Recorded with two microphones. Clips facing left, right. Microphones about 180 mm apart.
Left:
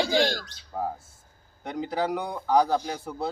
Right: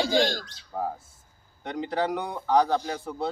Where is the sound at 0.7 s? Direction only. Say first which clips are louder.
Even; 5° left (ahead or behind).